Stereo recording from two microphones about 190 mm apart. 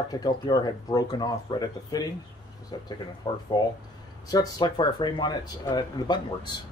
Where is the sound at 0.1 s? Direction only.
20° left (ahead or behind).